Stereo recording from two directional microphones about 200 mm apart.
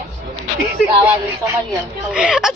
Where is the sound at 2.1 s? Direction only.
5° right (ahead or behind).